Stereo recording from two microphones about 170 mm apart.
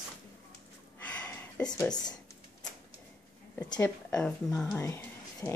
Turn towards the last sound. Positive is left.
turn(degrees=15)  # may be behind; listen again after turning